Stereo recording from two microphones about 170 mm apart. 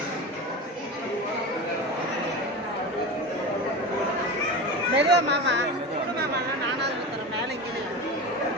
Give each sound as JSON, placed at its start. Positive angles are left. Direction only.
{"t": 4.9, "sound": "speech", "side_deg": -85}